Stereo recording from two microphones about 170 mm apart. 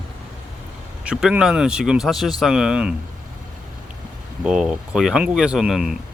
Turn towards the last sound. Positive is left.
turn(degrees=0)  # may be behind; listen again after turning